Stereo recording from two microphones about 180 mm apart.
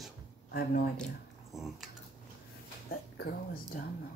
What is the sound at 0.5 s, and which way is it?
Speech, 60° left (ahead or behind).